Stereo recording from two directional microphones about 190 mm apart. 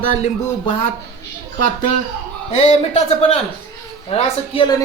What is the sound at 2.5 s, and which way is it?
A man's voice, 35° left (ahead or behind).